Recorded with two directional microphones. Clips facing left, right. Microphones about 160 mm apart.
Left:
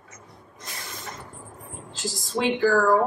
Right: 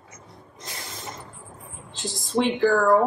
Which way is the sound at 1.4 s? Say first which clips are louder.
Left 2 dB; 85° left.